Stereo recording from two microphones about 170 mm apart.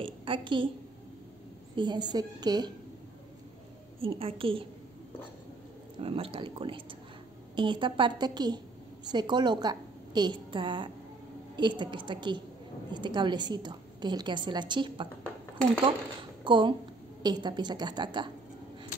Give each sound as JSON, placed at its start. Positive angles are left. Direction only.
{"t": 0.0, "sound": "a sound", "side_deg": -30}
{"t": 1.8, "sound": "a woman's voice", "side_deg": -25}
{"t": 4.0, "sound": "speech", "side_deg": -30}
{"t": 5.9, "sound": "a woman's voice", "side_deg": -35}
{"t": 16.4, "sound": "a woman's voice", "side_deg": -30}